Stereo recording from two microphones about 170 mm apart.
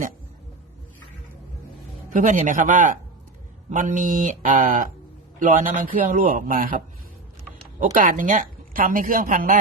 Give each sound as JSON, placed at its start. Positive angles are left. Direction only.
{"t": 2.0, "sound": "a woman's voice", "side_deg": -50}